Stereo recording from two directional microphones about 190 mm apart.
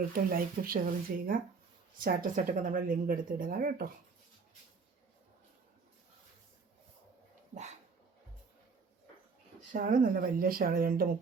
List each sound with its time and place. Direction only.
0.1 s speech: 50° right (ahead or behind)
7.5 s speech: 40° right (ahead or behind)
9.7 s speech: 45° right (ahead or behind)